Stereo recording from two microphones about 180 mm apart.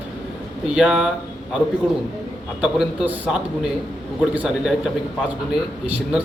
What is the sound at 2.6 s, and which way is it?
A man's voice, 5° right (ahead or behind).